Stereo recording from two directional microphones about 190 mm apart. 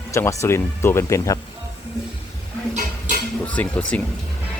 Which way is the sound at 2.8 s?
45° right (ahead or behind).